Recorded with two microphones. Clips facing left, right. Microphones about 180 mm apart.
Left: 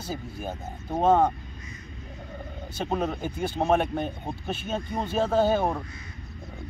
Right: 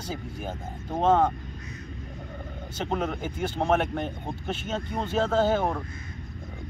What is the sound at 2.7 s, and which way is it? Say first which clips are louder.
Speech: left 1 dB; 10° left (ahead or behind).